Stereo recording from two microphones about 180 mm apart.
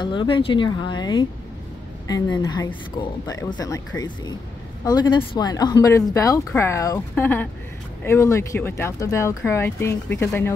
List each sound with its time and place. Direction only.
0.0 s speech: 25° left (ahead or behind)